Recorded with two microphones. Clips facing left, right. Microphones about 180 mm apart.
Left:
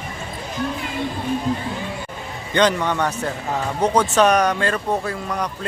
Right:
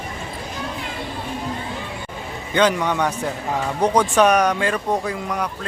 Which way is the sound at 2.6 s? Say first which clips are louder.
Even; 10° right (ahead or behind).